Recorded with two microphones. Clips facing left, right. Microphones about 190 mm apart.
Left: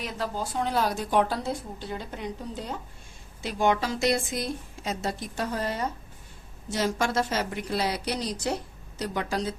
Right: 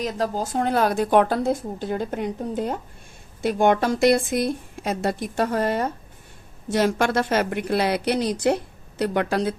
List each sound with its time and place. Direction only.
0.0 s a woman's voice: 45° right (ahead or behind); by 9.6 s 60° right (ahead or behind)